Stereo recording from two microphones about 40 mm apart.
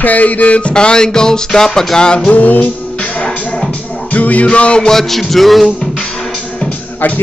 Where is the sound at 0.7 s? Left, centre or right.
Left.